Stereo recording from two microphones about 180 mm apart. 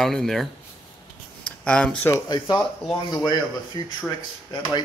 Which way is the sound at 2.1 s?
15° left (ahead or behind).